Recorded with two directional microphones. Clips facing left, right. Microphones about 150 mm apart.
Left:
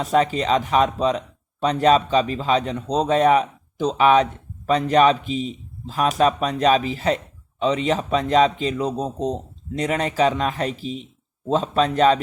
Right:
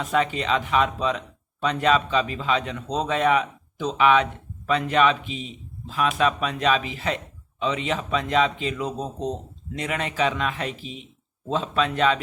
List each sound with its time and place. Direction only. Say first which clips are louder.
0.0 s speech: left 4 dB; 40° left (ahead or behind)